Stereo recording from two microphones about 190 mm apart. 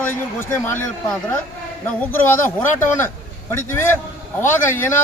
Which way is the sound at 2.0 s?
10° left (ahead or behind).